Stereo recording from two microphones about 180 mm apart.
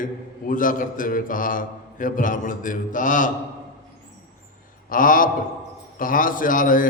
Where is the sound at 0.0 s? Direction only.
50° left (ahead or behind).